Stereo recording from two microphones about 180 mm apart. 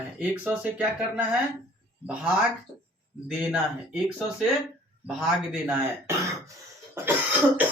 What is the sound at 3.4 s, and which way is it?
Speech, 5° right (ahead or behind).